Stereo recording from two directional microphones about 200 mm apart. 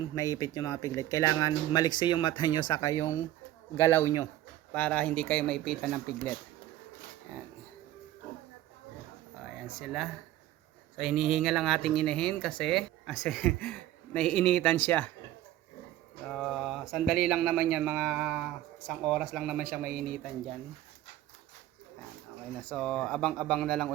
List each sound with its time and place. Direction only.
0.2 s speech: 20° left (ahead or behind); by 7.4 s 5° right (ahead or behind)
9.6 s speech: centre (ahead or behind)
16.2 s speech: 5° left (ahead or behind)
19.8 s speech: 45° right (ahead or behind)
22.6 s speech: 5° left (ahead or behind)